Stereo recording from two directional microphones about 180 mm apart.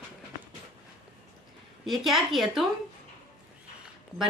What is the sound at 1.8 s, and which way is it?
Speech, centre (ahead or behind).